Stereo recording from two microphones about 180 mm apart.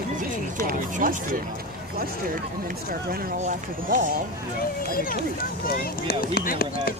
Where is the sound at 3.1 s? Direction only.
55° right (ahead or behind).